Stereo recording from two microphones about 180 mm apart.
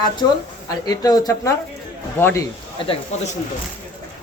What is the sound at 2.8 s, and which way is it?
Speech, 30° left (ahead or behind).